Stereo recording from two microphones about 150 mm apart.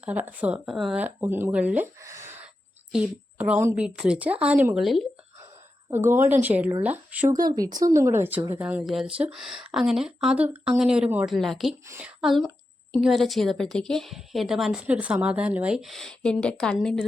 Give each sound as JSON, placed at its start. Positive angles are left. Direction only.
{"t": 0.0, "sound": "a woman's voice", "side_deg": -10}
{"t": 1.0, "sound": "a woman's voice", "side_deg": -15}
{"t": 5.9, "sound": "a woman's voice", "side_deg": -15}
{"t": 7.3, "sound": "a woman's voice", "side_deg": -25}